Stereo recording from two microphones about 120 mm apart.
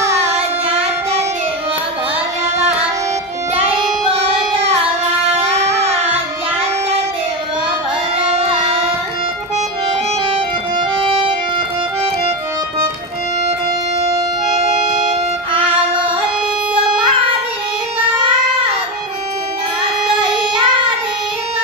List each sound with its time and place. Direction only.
3.6 s music: 10° right (ahead or behind)
5.3 s a sound: 55° right (ahead or behind)
8.2 s music: 55° right (ahead or behind)
10.2 s organ: 50° right (ahead or behind)
15.9 s music: 45° right (ahead or behind)
20.5 s child singing: 45° right (ahead or behind)